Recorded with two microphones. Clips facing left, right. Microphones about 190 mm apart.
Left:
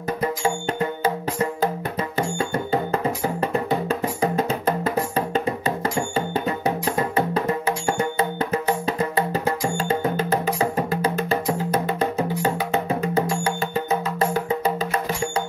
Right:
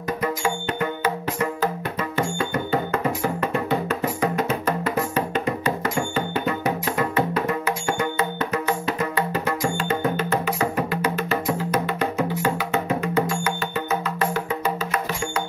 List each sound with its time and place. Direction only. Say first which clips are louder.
0.2 s music: left 2 dB; 30° left (ahead or behind)